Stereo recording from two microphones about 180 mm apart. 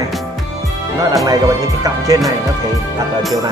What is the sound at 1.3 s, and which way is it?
Speech, 20° right (ahead or behind).